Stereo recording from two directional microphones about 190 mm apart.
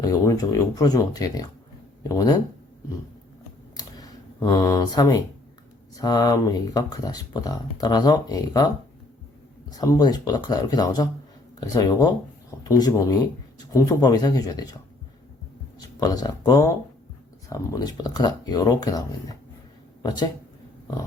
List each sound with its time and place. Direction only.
0.3 s speech: 20° left (ahead or behind)
3.8 s computer keyboard: 20° left (ahead or behind)
6.0 s speech: 20° left (ahead or behind)
9.6 s speech: 20° left (ahead or behind)
16.0 s speech: 20° left (ahead or behind)